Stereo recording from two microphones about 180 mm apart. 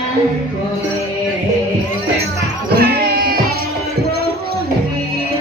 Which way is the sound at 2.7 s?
60° right (ahead or behind).